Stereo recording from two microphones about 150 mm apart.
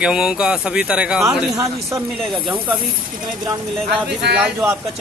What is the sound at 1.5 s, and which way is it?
Speech, 20° right (ahead or behind).